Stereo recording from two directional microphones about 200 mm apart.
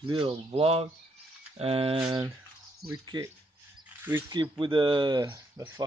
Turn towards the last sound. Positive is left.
turn(degrees=-15)  # may be behind; listen again after turning